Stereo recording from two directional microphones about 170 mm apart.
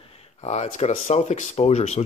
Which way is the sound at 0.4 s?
40° left (ahead or behind).